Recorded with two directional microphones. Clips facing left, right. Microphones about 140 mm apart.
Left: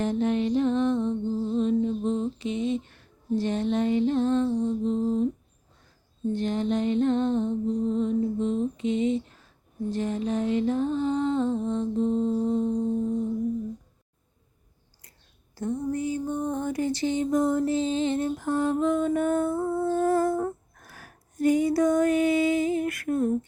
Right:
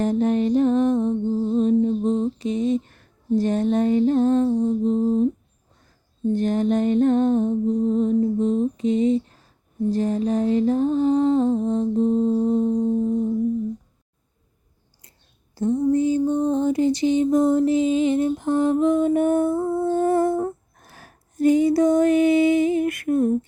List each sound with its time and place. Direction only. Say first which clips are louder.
0.0 s music: right 5 dB; 40° right (ahead or behind)
6.3 s music: right 6 dB; 45° right (ahead or behind)
15.5 s a sound: right 9 dB; 25° right (ahead or behind)